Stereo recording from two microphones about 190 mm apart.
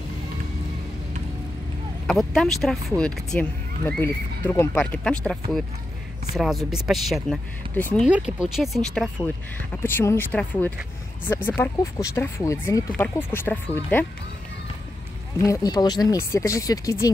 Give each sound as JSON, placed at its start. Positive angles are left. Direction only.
{"t": 2.0, "sound": "speech", "side_deg": 0}
{"t": 8.1, "sound": "speech", "side_deg": -5}
{"t": 15.4, "sound": "speech", "side_deg": 15}